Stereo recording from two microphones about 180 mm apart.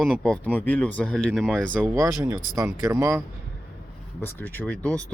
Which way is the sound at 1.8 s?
15° right (ahead or behind).